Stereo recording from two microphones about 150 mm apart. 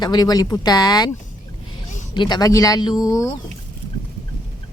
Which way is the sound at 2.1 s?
30° left (ahead or behind).